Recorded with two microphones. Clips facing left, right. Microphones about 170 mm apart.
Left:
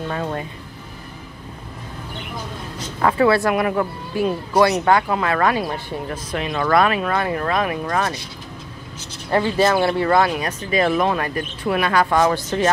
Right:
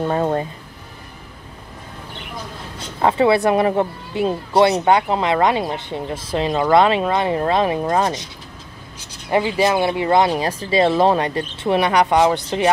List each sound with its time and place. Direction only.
0.1 s speech: 35° right (ahead or behind)
3.0 s speech: 25° right (ahead or behind)
9.3 s speech: 15° right (ahead or behind)
10.3 s speech: 30° right (ahead or behind)